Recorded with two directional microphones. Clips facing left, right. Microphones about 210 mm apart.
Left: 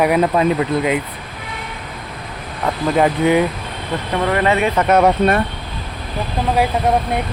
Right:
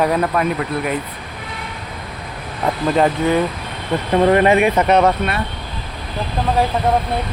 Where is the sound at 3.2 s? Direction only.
15° left (ahead or behind).